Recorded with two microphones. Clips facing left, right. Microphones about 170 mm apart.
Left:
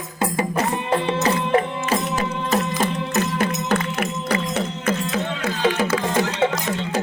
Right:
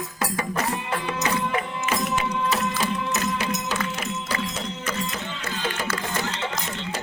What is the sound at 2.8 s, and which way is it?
Music, 50° left (ahead or behind).